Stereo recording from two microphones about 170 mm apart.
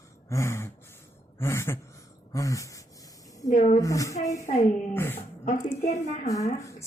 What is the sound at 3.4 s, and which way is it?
Speech, 50° left (ahead or behind).